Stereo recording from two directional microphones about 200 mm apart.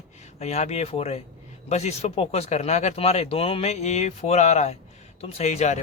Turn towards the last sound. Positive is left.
turn(degrees=35)  # may be behind; listen again after turning